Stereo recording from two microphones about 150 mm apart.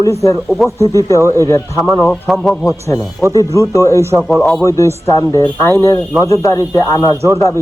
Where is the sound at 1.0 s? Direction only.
20° left (ahead or behind).